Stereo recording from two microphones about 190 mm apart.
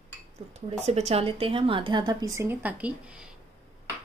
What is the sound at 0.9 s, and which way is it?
Speech, 35° right (ahead or behind).